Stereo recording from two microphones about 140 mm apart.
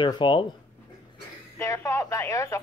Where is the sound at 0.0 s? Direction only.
35° left (ahead or behind).